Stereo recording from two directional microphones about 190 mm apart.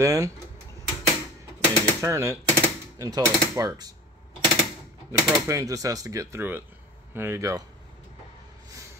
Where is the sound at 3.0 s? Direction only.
15° right (ahead or behind).